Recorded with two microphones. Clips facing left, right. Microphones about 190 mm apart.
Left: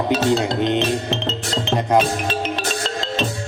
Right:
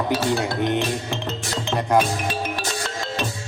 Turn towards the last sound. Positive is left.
turn(degrees=20)  # may be behind; listen again after turning